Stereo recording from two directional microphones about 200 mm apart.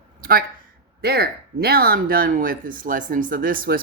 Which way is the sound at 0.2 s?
50° right (ahead or behind).